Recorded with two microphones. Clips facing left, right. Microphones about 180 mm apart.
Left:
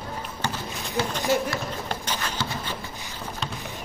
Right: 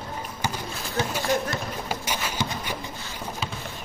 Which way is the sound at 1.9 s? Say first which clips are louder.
Right 1 dB; 10° right (ahead or behind).